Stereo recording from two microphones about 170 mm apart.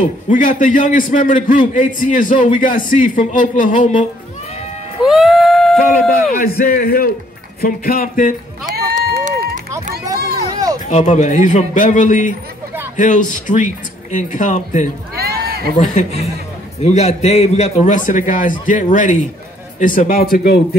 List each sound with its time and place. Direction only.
0.3 s a man's voice: 50° left (ahead or behind)
5.0 s music: centre (ahead or behind)
6.4 s a man's voice: 60° left (ahead or behind)
8.6 s run: 55° right (ahead or behind)
10.5 s a sound: 20° right (ahead or behind)
10.9 s a man's voice: 45° left (ahead or behind)
15.1 s a sound: 70° right (ahead or behind)
15.8 s a man's voice: 45° left (ahead or behind); by 20.6 s 65° left (ahead or behind)